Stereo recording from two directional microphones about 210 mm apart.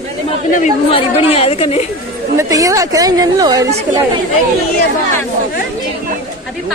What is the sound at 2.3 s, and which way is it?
A woman's voice, 15° right (ahead or behind).